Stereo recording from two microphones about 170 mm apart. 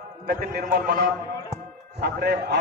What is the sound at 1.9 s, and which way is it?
Speech, 70° right (ahead or behind).